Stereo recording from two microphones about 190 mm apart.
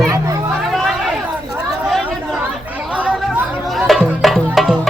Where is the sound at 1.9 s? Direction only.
5° right (ahead or behind).